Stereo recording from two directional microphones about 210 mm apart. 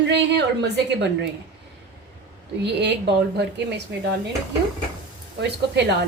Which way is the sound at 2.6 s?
55° right (ahead or behind).